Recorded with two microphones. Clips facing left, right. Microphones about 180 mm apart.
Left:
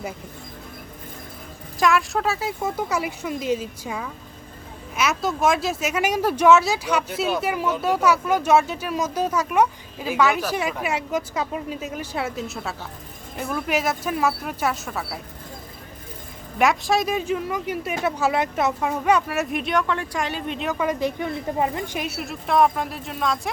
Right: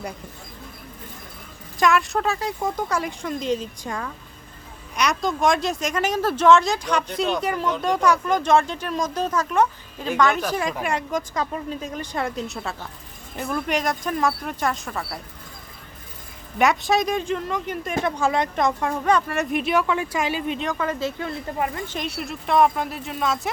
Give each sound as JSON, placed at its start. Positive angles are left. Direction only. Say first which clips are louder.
{"t": 1.8, "sound": "speech", "louder": "even", "side_deg": 0}
{"t": 16.6, "sound": "speech", "louder": "even", "side_deg": 0}
{"t": 20.7, "sound": "speech", "louder": "left 2 dB", "side_deg": 15}
{"t": 21.9, "sound": "speech", "louder": "even", "side_deg": 5}